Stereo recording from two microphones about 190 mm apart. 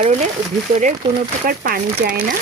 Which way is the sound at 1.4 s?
45° right (ahead or behind).